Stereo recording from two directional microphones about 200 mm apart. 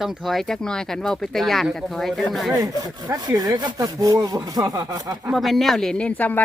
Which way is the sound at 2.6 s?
15° right (ahead or behind).